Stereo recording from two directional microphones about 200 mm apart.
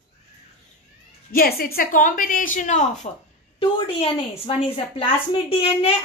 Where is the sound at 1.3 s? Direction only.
50° left (ahead or behind).